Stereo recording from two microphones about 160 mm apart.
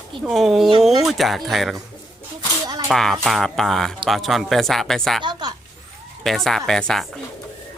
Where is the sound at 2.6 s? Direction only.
25° right (ahead or behind).